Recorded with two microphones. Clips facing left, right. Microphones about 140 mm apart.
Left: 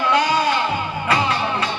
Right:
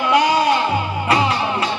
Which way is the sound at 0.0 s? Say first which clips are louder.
Right 3 dB; 20° right (ahead or behind).